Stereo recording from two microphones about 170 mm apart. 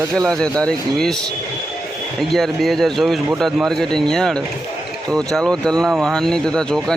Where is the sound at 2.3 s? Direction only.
Centre (ahead or behind).